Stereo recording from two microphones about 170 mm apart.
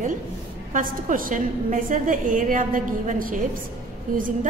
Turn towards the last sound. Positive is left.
turn(degrees=-50)  # may be behind; listen again after turning